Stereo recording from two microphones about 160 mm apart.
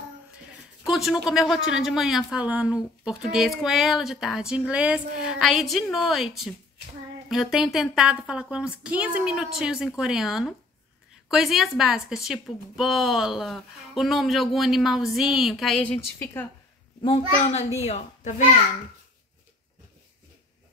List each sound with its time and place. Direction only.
0.8 s a woman's voice: 5° right (ahead or behind)
17.5 s speech: 40° left (ahead or behind)